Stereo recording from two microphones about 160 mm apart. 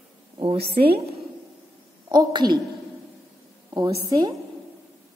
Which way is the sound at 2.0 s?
30° right (ahead or behind).